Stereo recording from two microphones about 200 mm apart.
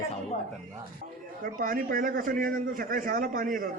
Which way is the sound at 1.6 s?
45° right (ahead or behind).